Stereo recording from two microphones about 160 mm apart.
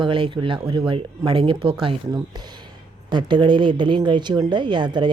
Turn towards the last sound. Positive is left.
turn(degrees=-30)  # may be behind; listen again after turning